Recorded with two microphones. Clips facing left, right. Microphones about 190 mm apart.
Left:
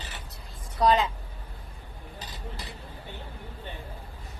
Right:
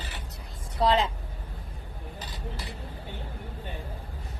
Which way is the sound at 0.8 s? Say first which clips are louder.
Left 1 dB; 25° right (ahead or behind).